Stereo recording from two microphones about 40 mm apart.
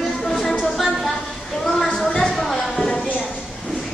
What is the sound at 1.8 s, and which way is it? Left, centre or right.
Music, centre.